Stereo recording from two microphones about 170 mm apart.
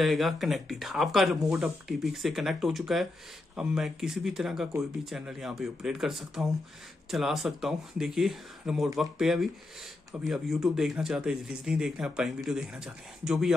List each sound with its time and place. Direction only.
0.0 s speech: centre (ahead or behind)